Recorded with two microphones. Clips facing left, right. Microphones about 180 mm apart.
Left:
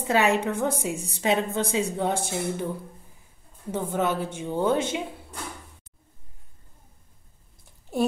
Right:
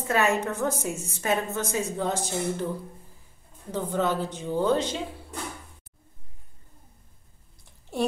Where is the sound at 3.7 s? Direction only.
10° left (ahead or behind).